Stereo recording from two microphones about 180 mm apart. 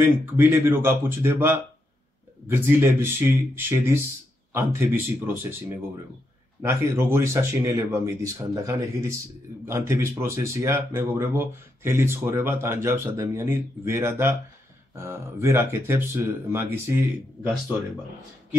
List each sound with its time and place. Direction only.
0.0 s speech: 10° right (ahead or behind)